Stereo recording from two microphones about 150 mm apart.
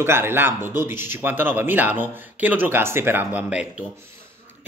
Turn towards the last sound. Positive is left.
turn(degrees=-5)  # may be behind; listen again after turning